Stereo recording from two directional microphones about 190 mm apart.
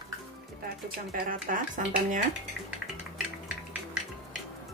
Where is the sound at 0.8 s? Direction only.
45° right (ahead or behind).